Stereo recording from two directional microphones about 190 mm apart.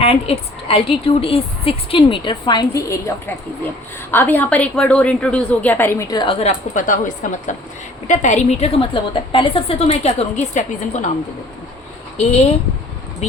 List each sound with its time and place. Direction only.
0.0 s a woman's voice: 30° left (ahead or behind)
6.4 s a woman's voice: 45° left (ahead or behind)
12.1 s speech: 35° left (ahead or behind)